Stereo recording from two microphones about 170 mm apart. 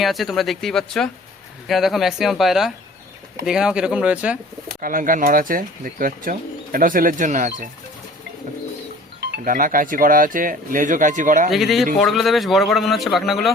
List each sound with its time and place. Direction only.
0.0 s speech: centre (ahead or behind)
4.8 s speech: 55° right (ahead or behind)
9.2 s speech: 60° right (ahead or behind)
11.5 s speech: centre (ahead or behind)